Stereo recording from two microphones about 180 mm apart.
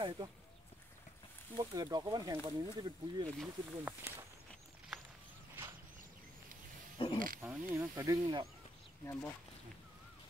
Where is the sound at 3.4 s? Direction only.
10° right (ahead or behind).